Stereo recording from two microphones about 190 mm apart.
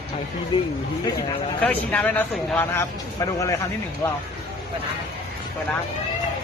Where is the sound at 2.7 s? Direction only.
15° left (ahead or behind).